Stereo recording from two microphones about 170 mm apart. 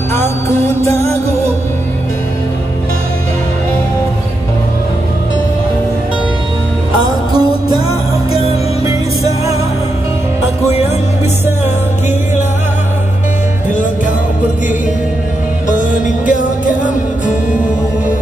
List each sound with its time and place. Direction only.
0.8 s music: 15° left (ahead or behind)
7.0 s music: 25° right (ahead or behind)
16.3 s music: 50° left (ahead or behind)